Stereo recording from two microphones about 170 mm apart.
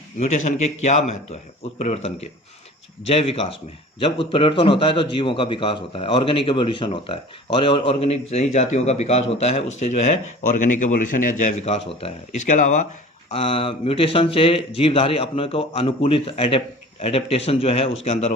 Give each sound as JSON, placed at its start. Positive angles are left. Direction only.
{"t": 0.2, "sound": "a man's voice", "side_deg": 45}
{"t": 13.3, "sound": "a man's voice", "side_deg": 35}